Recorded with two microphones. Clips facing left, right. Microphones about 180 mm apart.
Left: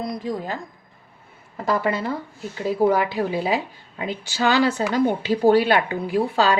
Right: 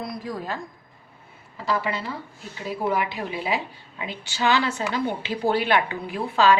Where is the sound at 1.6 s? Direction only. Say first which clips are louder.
Left 4 dB; 50° left (ahead or behind).